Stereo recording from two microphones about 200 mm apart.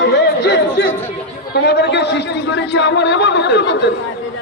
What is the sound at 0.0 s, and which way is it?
Chatter, 60° left (ahead or behind).